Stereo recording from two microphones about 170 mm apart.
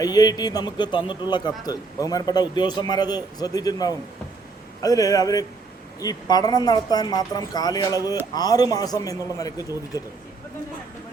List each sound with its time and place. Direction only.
0.0 s a man's voice: 20° left (ahead or behind)